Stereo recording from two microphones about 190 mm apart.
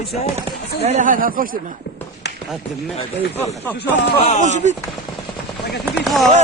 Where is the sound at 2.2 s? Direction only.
60° left (ahead or behind).